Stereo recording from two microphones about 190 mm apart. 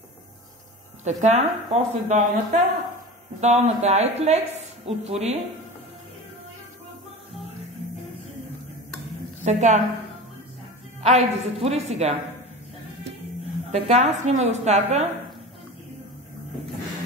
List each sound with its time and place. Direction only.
1.0 s speech: 35° right (ahead or behind)
9.4 s a woman's voice: 40° right (ahead or behind)
11.0 s speech: 35° right (ahead or behind)
13.7 s speech: 35° right (ahead or behind)